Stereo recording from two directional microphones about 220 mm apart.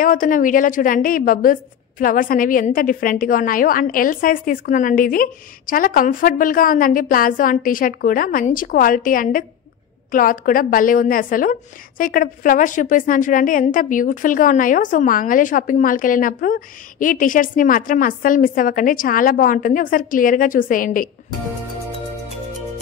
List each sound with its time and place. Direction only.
0.0 s a woman's voice: 40° left (ahead or behind)